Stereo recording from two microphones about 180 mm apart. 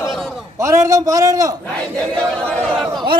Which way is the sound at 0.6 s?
15° right (ahead or behind).